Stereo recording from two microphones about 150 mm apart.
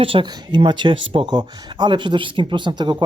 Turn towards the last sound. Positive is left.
turn(degrees=-30)  # may be behind; listen again after turning